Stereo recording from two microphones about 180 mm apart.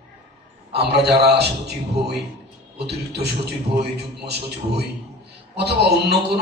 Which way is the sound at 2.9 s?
65° right (ahead or behind).